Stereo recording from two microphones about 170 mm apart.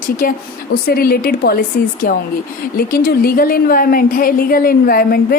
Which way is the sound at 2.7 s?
60° left (ahead or behind).